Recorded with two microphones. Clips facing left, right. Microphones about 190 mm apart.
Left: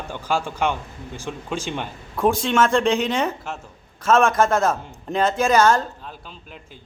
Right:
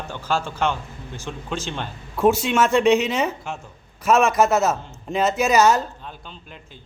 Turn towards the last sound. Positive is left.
turn(degrees=0)  # may be behind; listen again after turning